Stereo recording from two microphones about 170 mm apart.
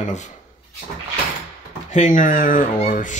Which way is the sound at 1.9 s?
50° left (ahead or behind).